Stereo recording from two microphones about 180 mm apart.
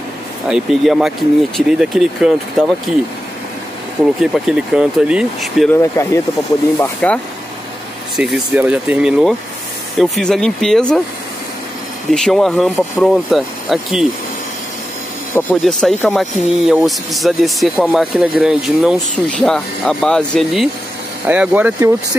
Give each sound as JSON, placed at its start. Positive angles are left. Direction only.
{"t": 0.5, "sound": "speech", "side_deg": 0}
{"t": 4.2, "sound": "speech", "side_deg": 0}
{"t": 5.7, "sound": "speech", "side_deg": 15}
{"t": 8.2, "sound": "speech", "side_deg": -5}
{"t": 12.1, "sound": "speech", "side_deg": 0}
{"t": 15.6, "sound": "speech", "side_deg": 5}
{"t": 21.3, "sound": "speech", "side_deg": -10}